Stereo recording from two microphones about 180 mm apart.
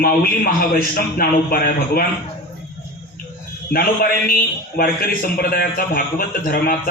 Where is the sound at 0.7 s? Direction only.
55° left (ahead or behind).